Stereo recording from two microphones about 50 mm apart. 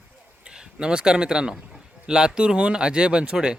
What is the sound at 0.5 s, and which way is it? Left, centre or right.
Speech, centre.